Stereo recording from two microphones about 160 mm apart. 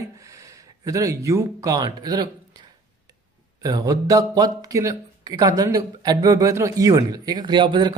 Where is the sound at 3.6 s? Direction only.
25° right (ahead or behind).